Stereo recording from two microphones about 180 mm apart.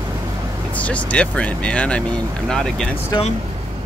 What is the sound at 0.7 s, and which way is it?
Speech, 10° left (ahead or behind).